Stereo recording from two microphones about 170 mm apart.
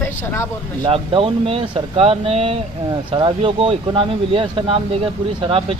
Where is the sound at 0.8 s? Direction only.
30° right (ahead or behind).